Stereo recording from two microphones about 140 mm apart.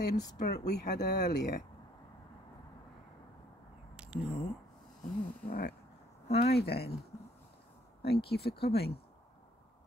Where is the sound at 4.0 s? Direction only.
5° right (ahead or behind).